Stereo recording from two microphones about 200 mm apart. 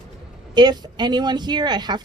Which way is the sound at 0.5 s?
20° right (ahead or behind).